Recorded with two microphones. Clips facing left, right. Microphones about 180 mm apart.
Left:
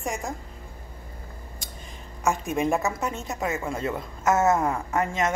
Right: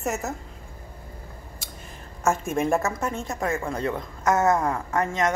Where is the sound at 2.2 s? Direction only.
Centre (ahead or behind).